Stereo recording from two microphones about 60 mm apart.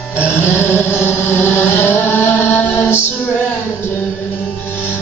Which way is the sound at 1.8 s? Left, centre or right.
Left.